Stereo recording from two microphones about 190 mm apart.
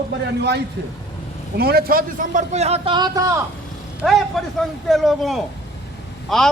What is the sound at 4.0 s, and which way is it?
A man's voice, centre (ahead or behind).